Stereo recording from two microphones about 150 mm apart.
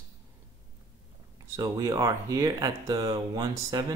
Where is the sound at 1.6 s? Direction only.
20° right (ahead or behind).